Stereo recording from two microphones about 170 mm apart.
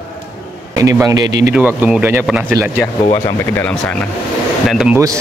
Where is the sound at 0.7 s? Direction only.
20° right (ahead or behind).